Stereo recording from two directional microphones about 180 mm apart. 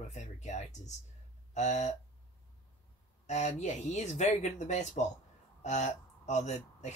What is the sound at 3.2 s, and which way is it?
Speech, 40° left (ahead or behind).